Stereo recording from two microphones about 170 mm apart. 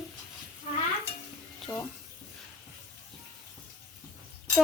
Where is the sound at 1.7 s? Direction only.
20° left (ahead or behind).